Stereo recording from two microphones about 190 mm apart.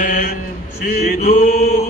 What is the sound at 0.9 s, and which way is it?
Chant, 50° left (ahead or behind).